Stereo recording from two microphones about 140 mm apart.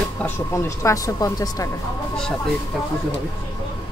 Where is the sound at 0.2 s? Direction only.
20° left (ahead or behind).